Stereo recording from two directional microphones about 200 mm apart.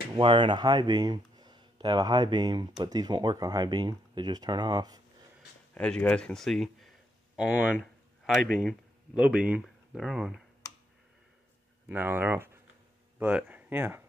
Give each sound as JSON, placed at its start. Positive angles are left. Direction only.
{"t": 0.1, "sound": "speech", "side_deg": -25}
{"t": 5.8, "sound": "speech", "side_deg": 5}
{"t": 11.9, "sound": "speech", "side_deg": -10}